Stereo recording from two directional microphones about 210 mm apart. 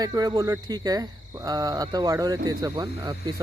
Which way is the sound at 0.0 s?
20° right (ahead or behind).